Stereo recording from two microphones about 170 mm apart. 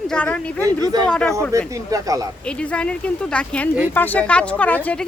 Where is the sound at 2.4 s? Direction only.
5° left (ahead or behind).